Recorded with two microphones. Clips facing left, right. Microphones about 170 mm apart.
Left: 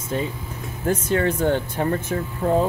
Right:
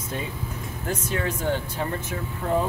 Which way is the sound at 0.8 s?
55° left (ahead or behind).